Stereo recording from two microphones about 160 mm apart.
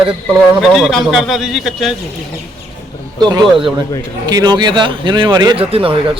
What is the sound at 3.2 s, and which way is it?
Speech, 25° right (ahead or behind).